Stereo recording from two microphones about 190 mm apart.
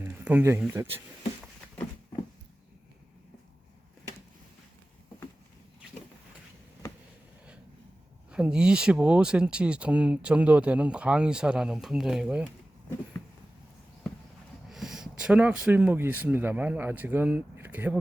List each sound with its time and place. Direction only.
0.0 s speech: 10° right (ahead or behind)
8.3 s speech: 5° right (ahead or behind)
14.7 s speech: centre (ahead or behind)